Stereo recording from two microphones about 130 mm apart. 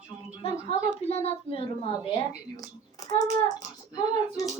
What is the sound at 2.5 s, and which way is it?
A child's voice, 30° left (ahead or behind).